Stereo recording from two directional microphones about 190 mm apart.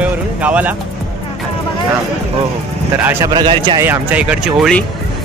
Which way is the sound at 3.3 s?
25° right (ahead or behind).